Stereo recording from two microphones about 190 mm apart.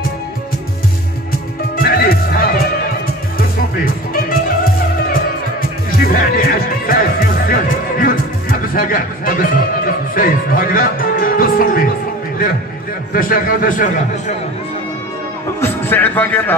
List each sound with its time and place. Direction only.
1.8 s music: 50° left (ahead or behind)
5.9 s music: 50° left (ahead or behind)
13.1 s a man's voice: 45° left (ahead or behind)
15.6 s a man's voice: 10° left (ahead or behind)